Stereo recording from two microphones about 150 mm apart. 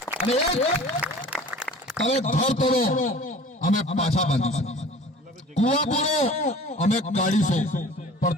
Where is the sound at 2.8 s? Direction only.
70° left (ahead or behind).